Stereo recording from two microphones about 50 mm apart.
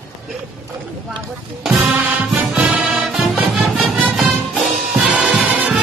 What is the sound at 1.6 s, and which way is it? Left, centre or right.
Music, centre.